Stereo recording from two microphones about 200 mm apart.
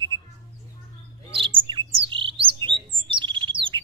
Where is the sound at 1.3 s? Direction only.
25° right (ahead or behind).